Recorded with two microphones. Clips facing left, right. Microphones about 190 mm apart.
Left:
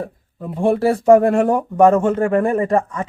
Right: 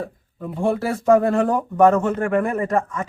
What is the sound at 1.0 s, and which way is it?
Speech, 30° left (ahead or behind).